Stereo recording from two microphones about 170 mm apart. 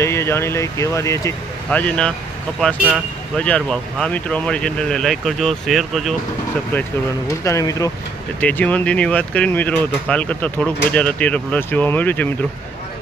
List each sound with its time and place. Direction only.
0.0 s speech: 15° left (ahead or behind)
7.4 s speech: 20° left (ahead or behind)